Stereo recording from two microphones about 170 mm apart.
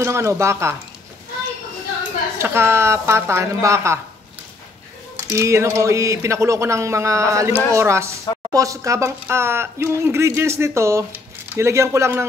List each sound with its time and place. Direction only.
0.0 s speech: 15° right (ahead or behind)
2.3 s speech: 15° right (ahead or behind)
5.3 s speech: 15° right (ahead or behind)